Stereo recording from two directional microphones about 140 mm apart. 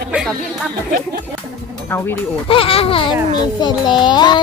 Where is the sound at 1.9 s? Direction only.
15° left (ahead or behind).